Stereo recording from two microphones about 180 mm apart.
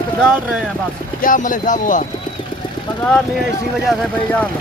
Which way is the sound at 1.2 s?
45° left (ahead or behind).